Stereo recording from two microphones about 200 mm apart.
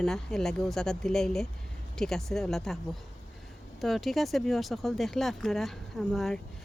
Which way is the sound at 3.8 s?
Centre (ahead or behind).